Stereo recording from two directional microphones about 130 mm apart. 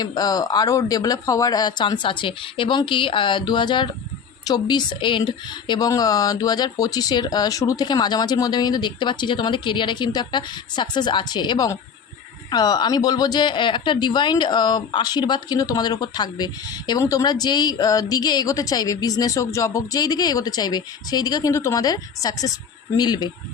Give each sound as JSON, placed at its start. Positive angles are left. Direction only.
{"t": 0.0, "sound": "speech", "side_deg": 30}